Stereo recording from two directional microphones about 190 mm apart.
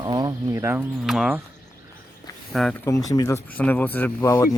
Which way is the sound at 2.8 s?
20° left (ahead or behind).